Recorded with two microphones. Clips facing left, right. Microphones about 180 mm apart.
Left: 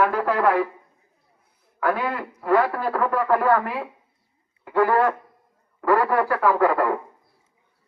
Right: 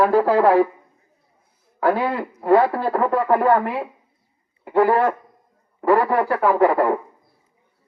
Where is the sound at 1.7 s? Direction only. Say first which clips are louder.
Right 4 dB; 30° right (ahead or behind).